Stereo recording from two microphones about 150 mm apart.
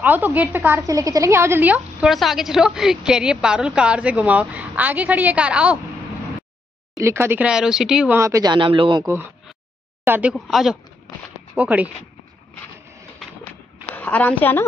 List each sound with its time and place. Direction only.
0.0 s a woman's voice: 10° right (ahead or behind)
7.0 s a woman's voice: 15° right (ahead or behind)
8.2 s speech: 20° right (ahead or behind)
9.0 s a woman's voice: 15° right (ahead or behind)
10.3 s a woman's voice: centre (ahead or behind)
13.9 s a woman's voice: 10° left (ahead or behind)